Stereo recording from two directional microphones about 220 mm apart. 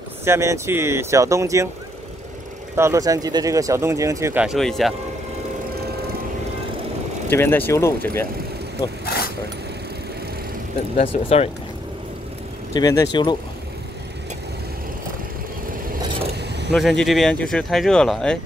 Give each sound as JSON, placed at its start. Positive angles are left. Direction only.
{"t": 0.2, "sound": "speech", "side_deg": -10}
{"t": 2.7, "sound": "speech", "side_deg": -15}
{"t": 7.2, "sound": "speech", "side_deg": 10}
{"t": 9.0, "sound": "vehicle", "side_deg": 45}
{"t": 11.2, "sound": "speech", "side_deg": 30}
{"t": 12.7, "sound": "speech", "side_deg": 15}
{"t": 16.3, "sound": "vehicle", "side_deg": -50}
{"t": 16.7, "sound": "speech", "side_deg": 0}